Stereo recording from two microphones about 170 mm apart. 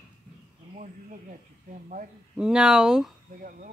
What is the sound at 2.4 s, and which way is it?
Speech, 5° right (ahead or behind).